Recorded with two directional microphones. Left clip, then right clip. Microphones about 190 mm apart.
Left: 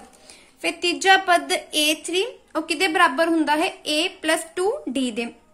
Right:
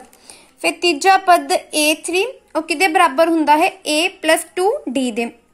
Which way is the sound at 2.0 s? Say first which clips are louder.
Right 5 dB; 25° right (ahead or behind).